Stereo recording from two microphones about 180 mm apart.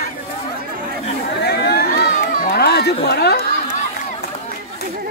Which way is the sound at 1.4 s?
60° left (ahead or behind).